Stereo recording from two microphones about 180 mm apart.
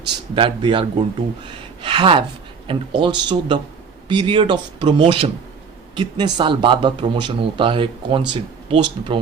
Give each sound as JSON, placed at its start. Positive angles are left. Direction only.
{"t": 0.3, "sound": "speech", "side_deg": -30}